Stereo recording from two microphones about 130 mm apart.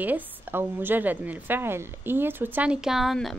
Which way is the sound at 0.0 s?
15° right (ahead or behind).